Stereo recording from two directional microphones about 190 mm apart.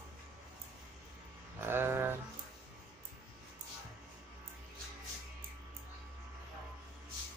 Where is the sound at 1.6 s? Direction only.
10° right (ahead or behind).